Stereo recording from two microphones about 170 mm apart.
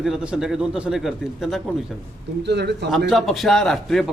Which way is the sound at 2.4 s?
80° right.